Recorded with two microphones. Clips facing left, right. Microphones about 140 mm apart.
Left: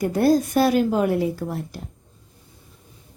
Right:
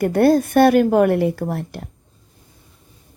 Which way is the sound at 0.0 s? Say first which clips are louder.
Right 4 dB; 60° right (ahead or behind).